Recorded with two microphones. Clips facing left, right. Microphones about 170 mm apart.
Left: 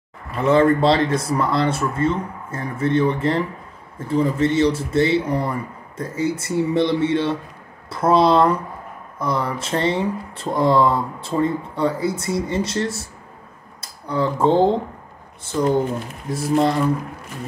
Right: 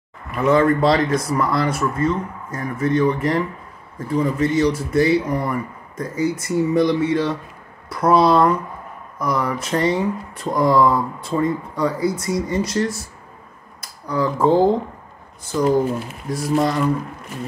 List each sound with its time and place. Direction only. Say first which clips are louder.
0.3 s speech: even; 30° left (ahead or behind)